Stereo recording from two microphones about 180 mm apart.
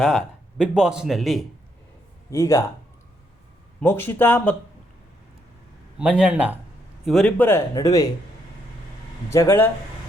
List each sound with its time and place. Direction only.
0.0 s speech: centre (ahead or behind)
2.3 s speech: 15° left (ahead or behind)
3.8 s speech: 10° left (ahead or behind)
6.0 s speech: 5° right (ahead or behind)
7.0 s speech: centre (ahead or behind); by 8.1 s 20° left (ahead or behind)
9.3 s speech: 15° left (ahead or behind)